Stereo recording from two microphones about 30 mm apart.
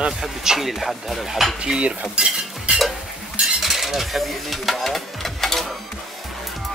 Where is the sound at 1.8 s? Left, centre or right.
Right.